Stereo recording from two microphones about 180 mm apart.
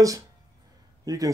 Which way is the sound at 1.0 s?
20° right (ahead or behind).